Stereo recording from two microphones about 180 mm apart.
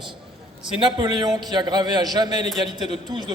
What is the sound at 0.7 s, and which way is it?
A man's voice, 25° right (ahead or behind).